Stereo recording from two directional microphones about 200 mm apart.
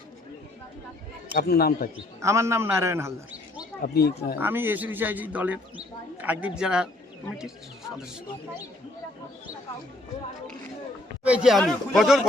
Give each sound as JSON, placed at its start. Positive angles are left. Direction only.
{"t": 1.3, "sound": "a man's voice", "side_deg": 50}
{"t": 2.2, "sound": "a man's voice", "side_deg": -15}
{"t": 3.8, "sound": "a man's voice", "side_deg": 50}
{"t": 4.4, "sound": "a man's voice", "side_deg": -10}
{"t": 11.2, "sound": "speech", "side_deg": -5}